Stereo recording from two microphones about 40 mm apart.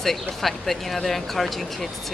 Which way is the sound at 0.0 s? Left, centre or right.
Centre.